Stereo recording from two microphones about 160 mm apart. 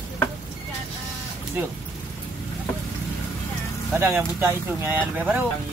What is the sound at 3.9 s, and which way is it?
Vehicle, 15° right (ahead or behind).